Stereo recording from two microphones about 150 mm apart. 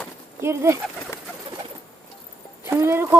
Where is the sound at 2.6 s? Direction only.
15° right (ahead or behind).